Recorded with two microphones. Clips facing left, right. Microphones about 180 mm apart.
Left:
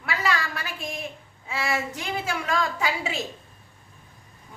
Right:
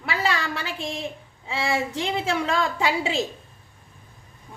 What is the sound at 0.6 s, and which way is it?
Child singing, 25° right (ahead or behind).